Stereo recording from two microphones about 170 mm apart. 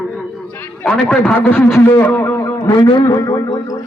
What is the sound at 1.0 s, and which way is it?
A man's voice, 5° left (ahead or behind).